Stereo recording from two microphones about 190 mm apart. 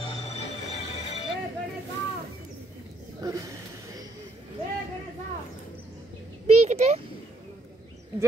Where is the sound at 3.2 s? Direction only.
20° right (ahead or behind).